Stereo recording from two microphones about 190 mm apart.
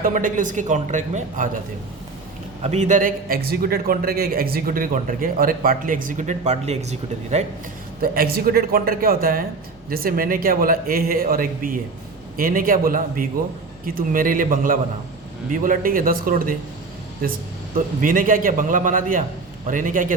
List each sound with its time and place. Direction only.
0.0 s a man's voice: 45° right (ahead or behind)
2.6 s a man's voice: 40° right (ahead or behind)
8.0 s a man's voice: 50° right (ahead or behind)
17.7 s a man's voice: 45° right (ahead or behind)